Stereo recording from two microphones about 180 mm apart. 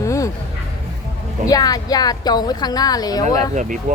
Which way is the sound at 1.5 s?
20° left (ahead or behind).